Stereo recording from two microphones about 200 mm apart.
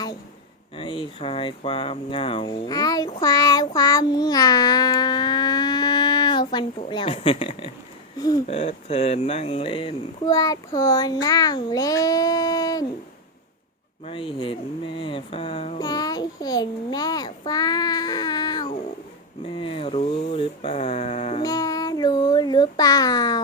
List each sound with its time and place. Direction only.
0.8 s speech: 25° left (ahead or behind)
3.1 s child singing: 20° left (ahead or behind)
8.4 s speech: 30° left (ahead or behind)
14.0 s speech: 25° left (ahead or behind)
21.4 s child singing: 20° left (ahead or behind)